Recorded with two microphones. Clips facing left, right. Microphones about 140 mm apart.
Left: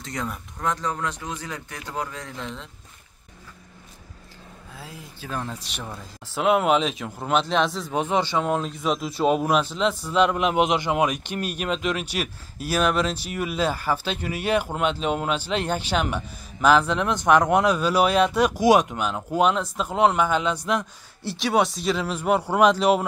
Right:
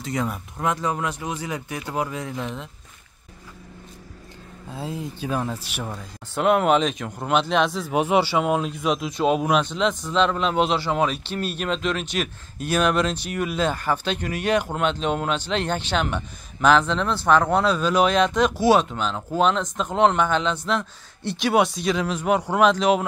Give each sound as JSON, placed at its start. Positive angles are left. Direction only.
{"t": 0.0, "sound": "speech", "side_deg": -5}
{"t": 4.7, "sound": "speech", "side_deg": -25}
{"t": 5.3, "sound": "speech", "side_deg": -5}
{"t": 7.9, "sound": "speech", "side_deg": -10}